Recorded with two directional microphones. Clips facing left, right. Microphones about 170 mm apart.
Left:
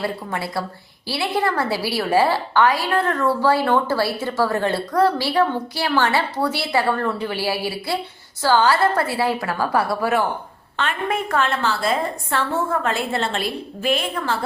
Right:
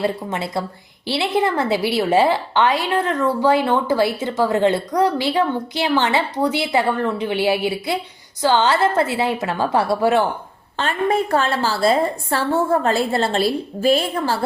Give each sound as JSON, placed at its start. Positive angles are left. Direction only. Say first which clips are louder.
{"t": 0.0, "sound": "a woman's voice", "louder": "right 3 dB", "side_deg": -20}